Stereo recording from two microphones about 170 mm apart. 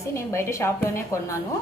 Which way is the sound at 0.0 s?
15° left (ahead or behind).